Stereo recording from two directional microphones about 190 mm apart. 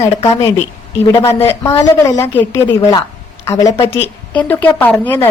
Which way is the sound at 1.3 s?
15° left (ahead or behind).